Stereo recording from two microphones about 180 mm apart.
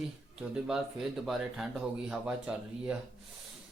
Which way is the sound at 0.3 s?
5° right (ahead or behind).